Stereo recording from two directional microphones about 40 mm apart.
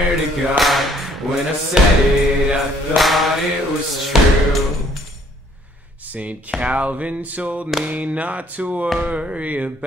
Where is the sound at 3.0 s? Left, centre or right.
Centre.